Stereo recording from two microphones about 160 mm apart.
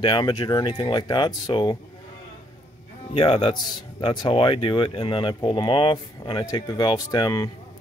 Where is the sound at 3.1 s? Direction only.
35° left (ahead or behind).